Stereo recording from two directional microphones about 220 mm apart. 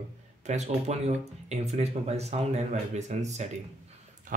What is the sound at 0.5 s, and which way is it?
Speech, 30° right (ahead or behind).